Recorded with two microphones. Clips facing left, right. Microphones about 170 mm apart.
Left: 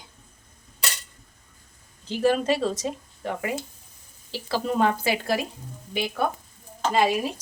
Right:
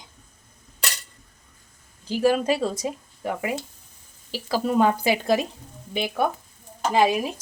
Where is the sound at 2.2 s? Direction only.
10° right (ahead or behind).